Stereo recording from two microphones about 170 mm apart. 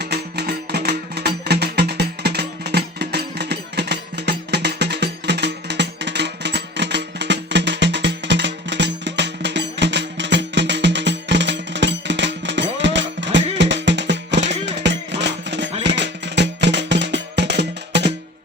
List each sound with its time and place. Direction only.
0.0 s music: 75° right (ahead or behind)